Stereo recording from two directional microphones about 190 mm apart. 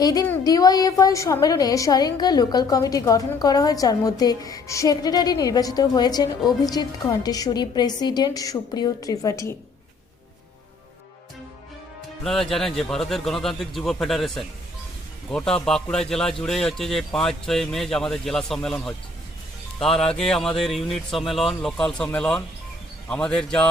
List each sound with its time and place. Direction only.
0.0 s a woman's voice: 20° left (ahead or behind)
12.2 s speech: centre (ahead or behind)
20.1 s speech: 5° left (ahead or behind)